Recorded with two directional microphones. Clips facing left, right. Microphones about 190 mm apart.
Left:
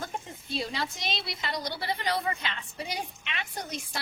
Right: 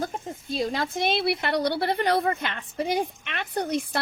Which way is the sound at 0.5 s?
50° right (ahead or behind).